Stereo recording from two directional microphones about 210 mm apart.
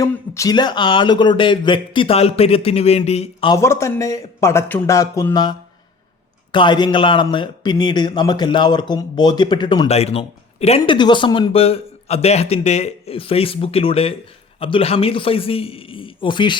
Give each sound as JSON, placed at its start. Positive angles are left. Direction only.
{"t": 0.0, "sound": "a man's voice", "side_deg": 15}
{"t": 3.5, "sound": "a man's voice", "side_deg": 15}